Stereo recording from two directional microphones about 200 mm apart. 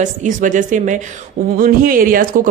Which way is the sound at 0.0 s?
40° right (ahead or behind).